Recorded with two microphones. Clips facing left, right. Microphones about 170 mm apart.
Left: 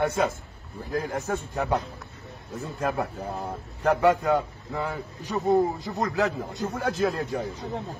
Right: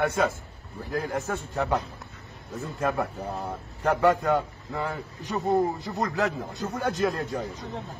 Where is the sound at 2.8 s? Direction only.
15° left (ahead or behind).